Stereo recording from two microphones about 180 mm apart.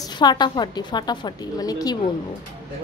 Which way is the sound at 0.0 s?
25° left (ahead or behind).